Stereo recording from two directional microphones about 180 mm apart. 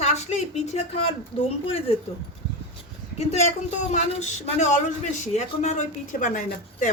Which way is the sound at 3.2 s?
35° left (ahead or behind).